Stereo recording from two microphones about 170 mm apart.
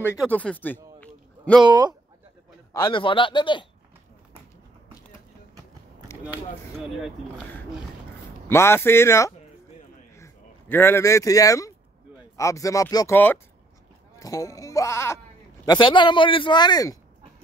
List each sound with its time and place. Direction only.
0.3 s a sound: 10° left (ahead or behind)
1.6 s speech: 25° right (ahead or behind)
2.7 s speech: 25° left (ahead or behind)
8.5 s speech: 15° left (ahead or behind)